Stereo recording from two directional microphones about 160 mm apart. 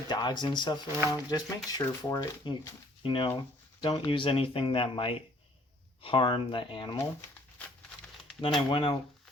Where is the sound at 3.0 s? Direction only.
30° left (ahead or behind).